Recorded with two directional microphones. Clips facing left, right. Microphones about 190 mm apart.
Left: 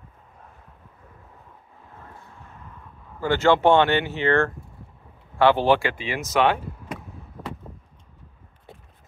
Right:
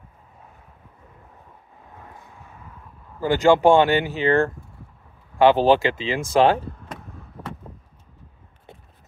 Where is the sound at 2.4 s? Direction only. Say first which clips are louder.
Even; 10° right (ahead or behind).